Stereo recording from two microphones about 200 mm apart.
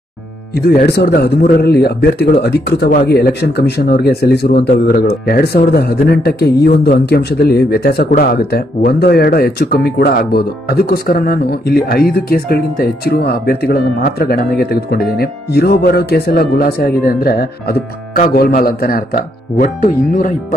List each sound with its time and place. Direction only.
0.6 s a man's voice: 50° left (ahead or behind)